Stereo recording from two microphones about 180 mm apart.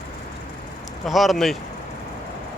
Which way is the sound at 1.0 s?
Centre (ahead or behind).